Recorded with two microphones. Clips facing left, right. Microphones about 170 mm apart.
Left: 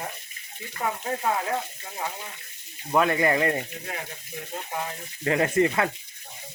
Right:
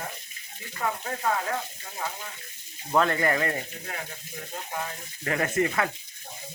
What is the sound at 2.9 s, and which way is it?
Speech, 10° left (ahead or behind).